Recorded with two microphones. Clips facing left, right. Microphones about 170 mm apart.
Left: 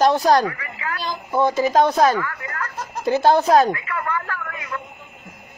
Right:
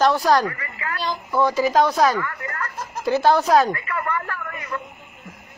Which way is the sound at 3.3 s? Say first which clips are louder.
Left 2 dB; 25° left (ahead or behind).